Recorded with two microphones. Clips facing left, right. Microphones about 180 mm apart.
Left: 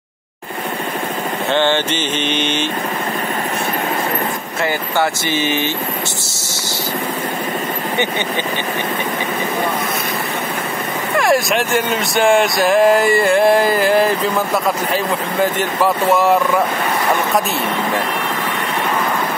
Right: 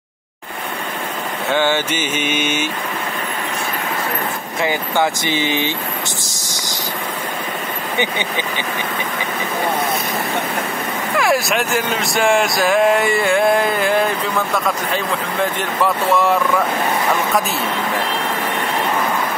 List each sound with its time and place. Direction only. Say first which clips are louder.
1.5 s mantra: left 1 dB; 10° right (ahead or behind)
4.6 s mantra: even; 15° right (ahead or behind)
11.1 s speech: left 2 dB; centre (ahead or behind)
15.8 s speech: left 2 dB; centre (ahead or behind)